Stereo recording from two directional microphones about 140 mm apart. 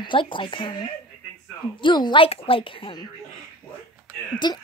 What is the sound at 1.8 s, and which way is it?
A woman's voice, 30° left (ahead or behind).